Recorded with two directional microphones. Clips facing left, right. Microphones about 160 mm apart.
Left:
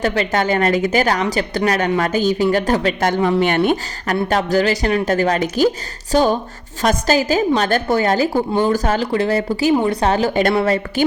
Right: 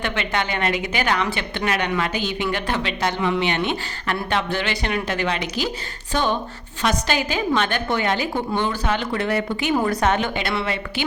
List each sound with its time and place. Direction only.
0.0 s a woman's voice: 40° left (ahead or behind)